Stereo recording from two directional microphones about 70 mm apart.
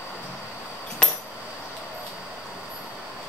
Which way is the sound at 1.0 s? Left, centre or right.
Centre.